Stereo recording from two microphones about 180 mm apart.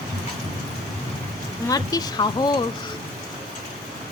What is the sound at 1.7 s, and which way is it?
Speech, 20° left (ahead or behind).